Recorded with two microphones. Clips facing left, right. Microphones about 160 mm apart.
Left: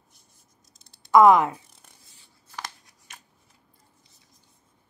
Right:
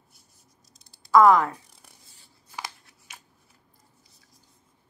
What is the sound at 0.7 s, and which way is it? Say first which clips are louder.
Typing: even; centre (ahead or behind).